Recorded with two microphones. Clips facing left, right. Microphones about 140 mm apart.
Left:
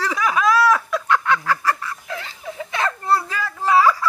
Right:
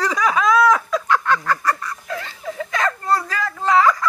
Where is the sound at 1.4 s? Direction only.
10° left (ahead or behind).